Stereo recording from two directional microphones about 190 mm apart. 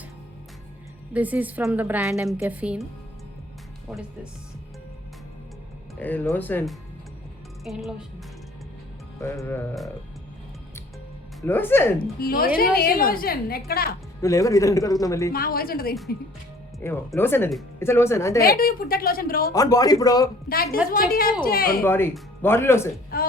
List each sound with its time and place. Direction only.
1.1 s a woman's voice: 10° right (ahead or behind)
3.8 s speech: 5° right (ahead or behind)
6.0 s speech: 10° left (ahead or behind)
9.2 s speech: 15° left (ahead or behind)
11.4 s speech: 10° left (ahead or behind)
11.9 s a woman's voice: 50° left (ahead or behind)
14.2 s speech: 15° left (ahead or behind)
15.3 s a woman's voice: 50° left (ahead or behind)
16.8 s speech: 15° left (ahead or behind)
18.4 s a woman's voice: 50° left (ahead or behind)
19.5 s speech: 20° left (ahead or behind)
20.9 s a woman's voice: 50° left (ahead or behind)
21.8 s speech: 10° left (ahead or behind)
23.1 s a woman's voice: 50° left (ahead or behind)